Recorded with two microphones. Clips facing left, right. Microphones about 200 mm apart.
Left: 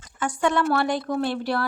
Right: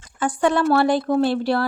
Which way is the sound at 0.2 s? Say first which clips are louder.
Right 4 dB; 30° right (ahead or behind).